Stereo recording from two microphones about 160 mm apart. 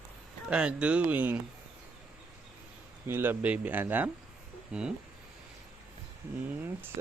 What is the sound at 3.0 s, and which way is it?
Speech, 15° right (ahead or behind).